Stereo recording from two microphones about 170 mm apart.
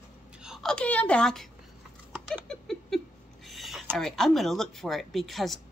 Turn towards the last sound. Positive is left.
turn(degrees=0)  # may be behind; listen again after turning